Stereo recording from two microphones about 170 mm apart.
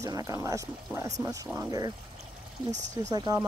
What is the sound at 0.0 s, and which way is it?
Speech, 20° right (ahead or behind).